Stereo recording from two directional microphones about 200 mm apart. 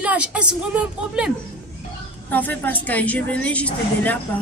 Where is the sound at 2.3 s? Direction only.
10° left (ahead or behind).